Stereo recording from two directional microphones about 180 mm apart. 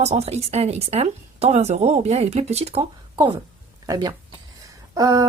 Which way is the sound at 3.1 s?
25° right (ahead or behind).